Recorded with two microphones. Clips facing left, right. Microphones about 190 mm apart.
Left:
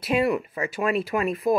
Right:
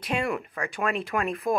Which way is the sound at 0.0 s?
5° left (ahead or behind).